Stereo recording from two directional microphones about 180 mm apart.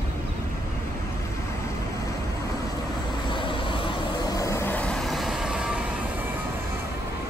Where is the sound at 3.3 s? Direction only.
25° left (ahead or behind); by 5.8 s 5° right (ahead or behind).